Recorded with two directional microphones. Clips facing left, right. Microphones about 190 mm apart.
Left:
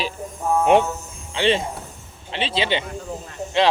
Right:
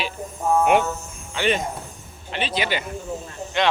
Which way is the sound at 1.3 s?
30° left (ahead or behind).